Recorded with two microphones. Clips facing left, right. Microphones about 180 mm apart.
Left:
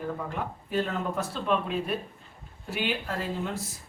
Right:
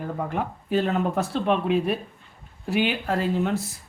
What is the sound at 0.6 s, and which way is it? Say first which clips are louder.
Speech: right 6 dB; 70° right (ahead or behind).